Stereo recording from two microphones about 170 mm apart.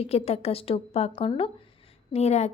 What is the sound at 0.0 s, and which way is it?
A woman's voice, 35° left (ahead or behind).